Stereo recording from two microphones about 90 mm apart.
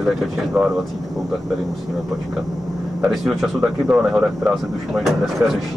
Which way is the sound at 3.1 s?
Centre (ahead or behind).